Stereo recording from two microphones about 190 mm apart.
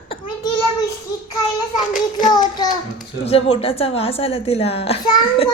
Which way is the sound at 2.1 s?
20° left (ahead or behind).